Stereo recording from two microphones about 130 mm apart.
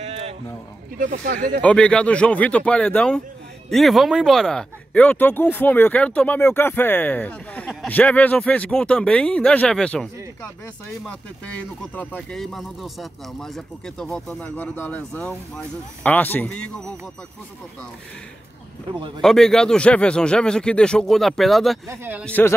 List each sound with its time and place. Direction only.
0.0 s a sound: 55° right (ahead or behind)
0.9 s speech: 90° right
1.6 s speech: 10° left (ahead or behind)
11.1 s speech: 10° left (ahead or behind)
19.2 s a man's voice: 5° left (ahead or behind)
21.8 s speech: 15° right (ahead or behind)
22.2 s speech: 10° left (ahead or behind)